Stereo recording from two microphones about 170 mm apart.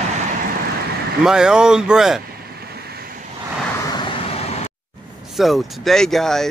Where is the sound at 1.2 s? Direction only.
5° right (ahead or behind).